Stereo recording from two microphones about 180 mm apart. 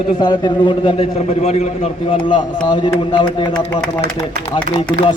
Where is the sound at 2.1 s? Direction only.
25° left (ahead or behind).